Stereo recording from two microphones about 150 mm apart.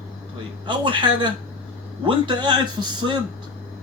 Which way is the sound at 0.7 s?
30° right (ahead or behind).